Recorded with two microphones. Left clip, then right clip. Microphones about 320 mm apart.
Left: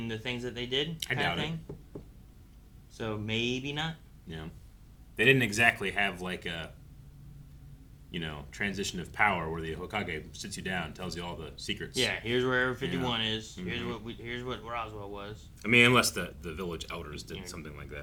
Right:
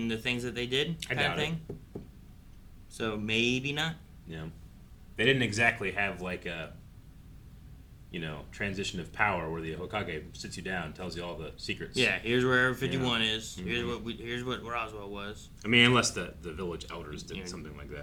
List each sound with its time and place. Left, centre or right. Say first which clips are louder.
0.0 s speech: right 3 dB; left
0.9 s speech: even; centre
3.0 s speech: right 3 dB; left
5.1 s speech: left 2 dB; right
8.1 s speech: left 1 dB; centre
12.1 s speech: right 2 dB; left
15.6 s speech: left 1 dB; centre